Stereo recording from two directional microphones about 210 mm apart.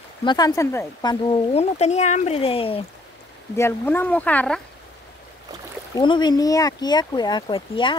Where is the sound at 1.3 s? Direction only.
30° left (ahead or behind).